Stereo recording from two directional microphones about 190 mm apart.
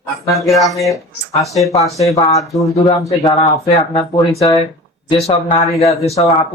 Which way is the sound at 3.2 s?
30° left (ahead or behind).